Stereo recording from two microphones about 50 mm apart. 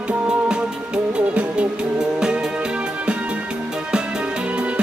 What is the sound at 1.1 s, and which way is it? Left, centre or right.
Music, right.